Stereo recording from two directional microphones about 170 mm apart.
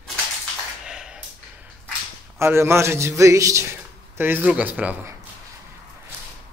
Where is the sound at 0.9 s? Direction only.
5° right (ahead or behind).